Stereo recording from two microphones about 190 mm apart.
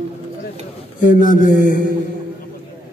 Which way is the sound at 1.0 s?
45° left (ahead or behind).